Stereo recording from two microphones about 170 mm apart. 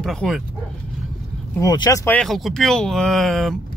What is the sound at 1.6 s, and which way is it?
Speech, 20° left (ahead or behind).